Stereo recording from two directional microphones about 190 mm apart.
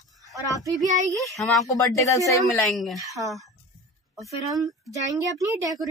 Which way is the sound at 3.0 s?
15° right (ahead or behind).